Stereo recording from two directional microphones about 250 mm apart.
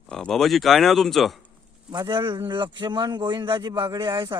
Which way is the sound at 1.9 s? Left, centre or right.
Centre.